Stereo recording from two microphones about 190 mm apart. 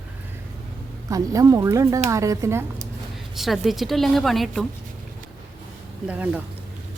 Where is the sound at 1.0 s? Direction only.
20° right (ahead or behind).